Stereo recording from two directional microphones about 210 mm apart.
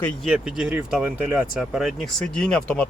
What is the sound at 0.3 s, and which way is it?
Speech, centre (ahead or behind).